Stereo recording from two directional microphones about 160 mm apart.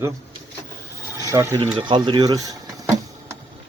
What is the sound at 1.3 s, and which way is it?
Speech, 20° right (ahead or behind).